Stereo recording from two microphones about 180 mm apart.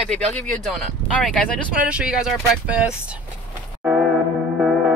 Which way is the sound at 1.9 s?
5° right (ahead or behind).